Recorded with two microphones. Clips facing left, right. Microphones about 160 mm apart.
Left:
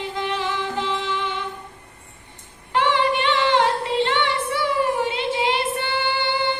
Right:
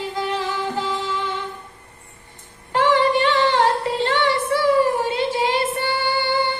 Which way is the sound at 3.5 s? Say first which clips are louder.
Even; 40° right (ahead or behind).